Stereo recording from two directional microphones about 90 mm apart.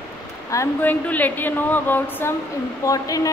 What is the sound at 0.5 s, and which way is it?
Speech, 40° left (ahead or behind).